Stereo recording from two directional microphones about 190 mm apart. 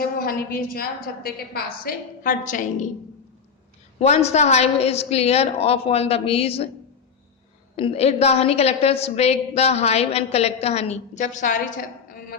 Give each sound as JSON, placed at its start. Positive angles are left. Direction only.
{"t": 0.0, "sound": "a woman's voice", "side_deg": 50}
{"t": 3.9, "sound": "a woman's voice", "side_deg": 35}
{"t": 7.8, "sound": "a woman's voice", "side_deg": 30}